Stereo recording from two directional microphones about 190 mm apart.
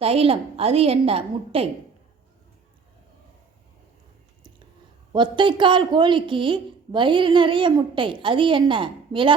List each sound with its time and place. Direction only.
0.0 s a woman's voice: 30° right (ahead or behind)
5.1 s speech: 25° right (ahead or behind)